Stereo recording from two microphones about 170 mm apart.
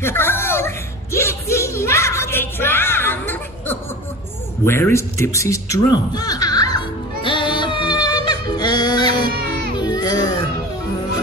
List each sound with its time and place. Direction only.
0.0 s a sound: 15° left (ahead or behind)
4.6 s speech: 15° left (ahead or behind)
7.2 s music: 25° left (ahead or behind)
9.8 s baby cry: 25° left (ahead or behind)